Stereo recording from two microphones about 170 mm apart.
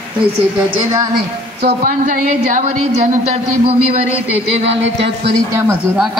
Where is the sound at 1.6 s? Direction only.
80° right.